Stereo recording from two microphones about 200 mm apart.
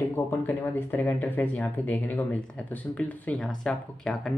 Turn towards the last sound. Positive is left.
turn(degrees=0)  # may be behind; listen again after turning